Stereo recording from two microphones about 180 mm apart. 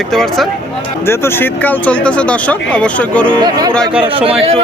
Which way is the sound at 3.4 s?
25° right (ahead or behind).